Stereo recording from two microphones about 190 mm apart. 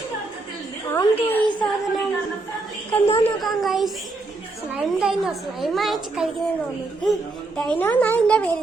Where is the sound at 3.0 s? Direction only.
30° left (ahead or behind).